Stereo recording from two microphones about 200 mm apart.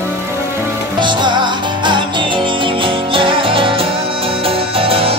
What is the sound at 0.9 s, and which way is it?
Music, 25° right (ahead or behind).